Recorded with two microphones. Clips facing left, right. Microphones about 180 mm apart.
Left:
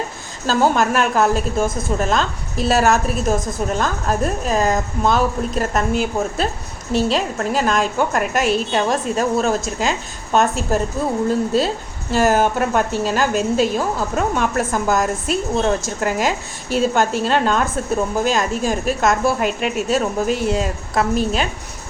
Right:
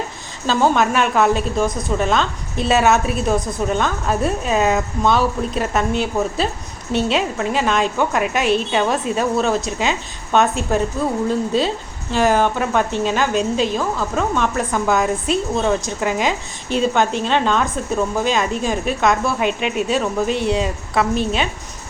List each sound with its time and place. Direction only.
0.4 s a woman's voice: 5° left (ahead or behind)